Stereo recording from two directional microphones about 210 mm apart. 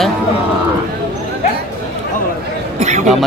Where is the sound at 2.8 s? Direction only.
35° right (ahead or behind).